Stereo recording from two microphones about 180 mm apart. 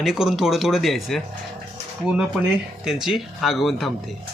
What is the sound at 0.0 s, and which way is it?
Speech, 5° right (ahead or behind).